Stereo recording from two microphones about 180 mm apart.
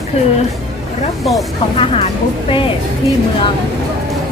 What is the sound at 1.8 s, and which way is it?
Speech, 30° left (ahead or behind).